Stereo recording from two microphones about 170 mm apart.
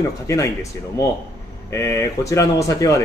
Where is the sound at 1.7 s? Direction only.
15° left (ahead or behind).